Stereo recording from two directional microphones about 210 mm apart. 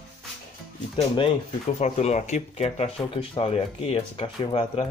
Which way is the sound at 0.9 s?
25° left (ahead or behind).